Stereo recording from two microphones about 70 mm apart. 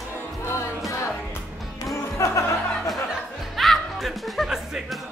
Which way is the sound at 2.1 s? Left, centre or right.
Left.